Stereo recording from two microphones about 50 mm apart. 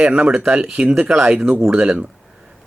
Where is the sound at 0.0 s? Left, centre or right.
Right.